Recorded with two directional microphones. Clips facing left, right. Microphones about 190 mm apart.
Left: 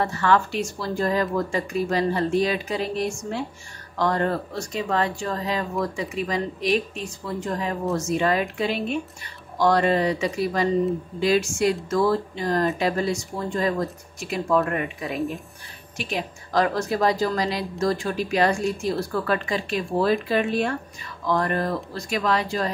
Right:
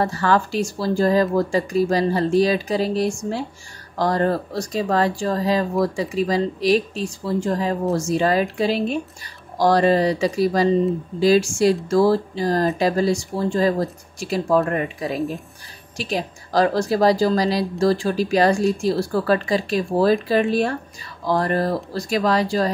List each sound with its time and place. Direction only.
0.0 s speech: 35° right (ahead or behind)